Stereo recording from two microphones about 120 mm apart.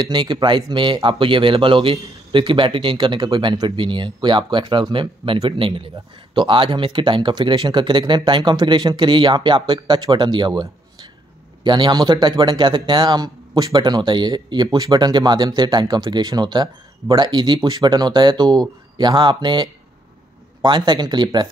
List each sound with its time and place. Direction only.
0.0 s speech: 40° right (ahead or behind)